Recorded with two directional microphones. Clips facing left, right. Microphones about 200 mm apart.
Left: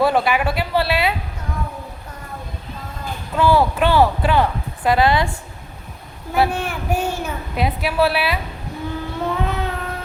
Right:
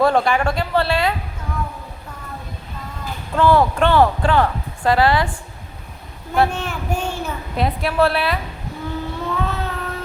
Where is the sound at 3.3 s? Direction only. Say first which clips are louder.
Right 1 dB; 5° left (ahead or behind).